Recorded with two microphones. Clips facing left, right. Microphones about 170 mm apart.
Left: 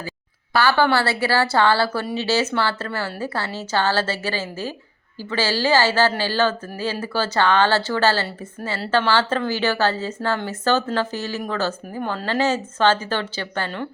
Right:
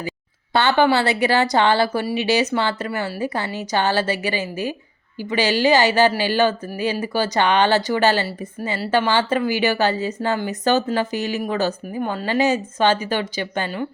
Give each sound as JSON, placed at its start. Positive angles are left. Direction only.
{"t": 0.5, "sound": "a woman's voice", "side_deg": -20}